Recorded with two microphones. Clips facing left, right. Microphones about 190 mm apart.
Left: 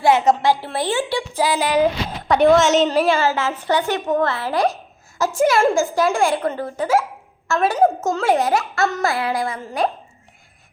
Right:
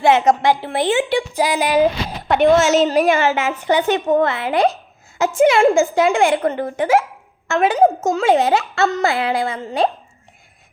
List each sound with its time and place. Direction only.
0.0 s a woman's voice: 20° right (ahead or behind)
7.5 s a woman's voice: 20° right (ahead or behind)